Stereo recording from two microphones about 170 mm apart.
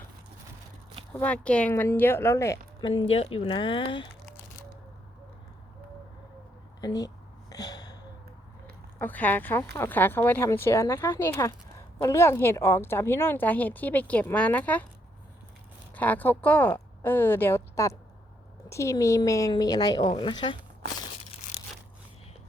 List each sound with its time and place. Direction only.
1.1 s a woman's voice: 10° left (ahead or behind)
2.9 s speech: 35° left (ahead or behind)
6.8 s a woman's voice: 20° left (ahead or behind)
7.5 s a sound: 20° left (ahead or behind)
9.0 s a woman's voice: 10° left (ahead or behind)
16.0 s a woman's voice: 10° left (ahead or behind); by 20.6 s 30° left (ahead or behind)